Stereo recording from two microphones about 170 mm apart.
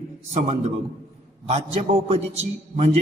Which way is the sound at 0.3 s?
40° right (ahead or behind).